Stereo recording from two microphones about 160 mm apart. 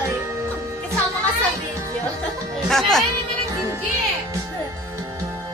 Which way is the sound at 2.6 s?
Centre (ahead or behind).